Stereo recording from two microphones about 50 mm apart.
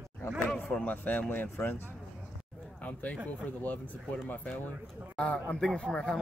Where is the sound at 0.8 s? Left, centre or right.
Left.